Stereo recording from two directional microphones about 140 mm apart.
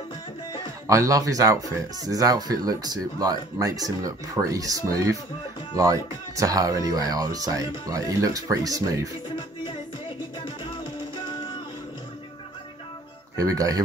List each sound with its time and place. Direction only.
0.8 s speech: 25° right (ahead or behind)
10.4 s music: 35° left (ahead or behind)
13.4 s speech: 25° right (ahead or behind)